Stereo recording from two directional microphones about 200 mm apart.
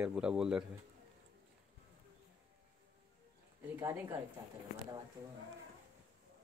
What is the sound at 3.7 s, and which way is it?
Speech, 10° right (ahead or behind).